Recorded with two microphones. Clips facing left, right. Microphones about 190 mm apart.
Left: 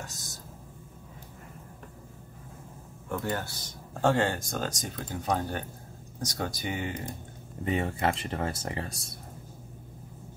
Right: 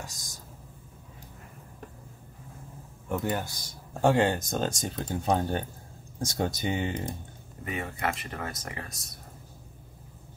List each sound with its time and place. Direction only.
0.0 s a sound: 15° right (ahead or behind)
3.1 s speech: 15° right (ahead or behind)
7.6 s speech: 30° left (ahead or behind)